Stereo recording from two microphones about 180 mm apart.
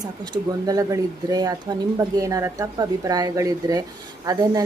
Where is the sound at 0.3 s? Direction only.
15° right (ahead or behind).